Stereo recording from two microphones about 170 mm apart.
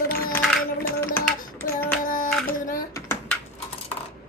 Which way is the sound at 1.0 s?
15° left (ahead or behind).